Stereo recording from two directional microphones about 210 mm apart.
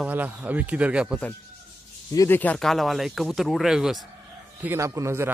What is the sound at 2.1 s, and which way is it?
Speech, 10° left (ahead or behind).